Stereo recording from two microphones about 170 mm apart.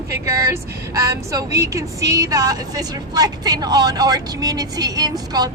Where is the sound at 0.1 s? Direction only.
15° right (ahead or behind).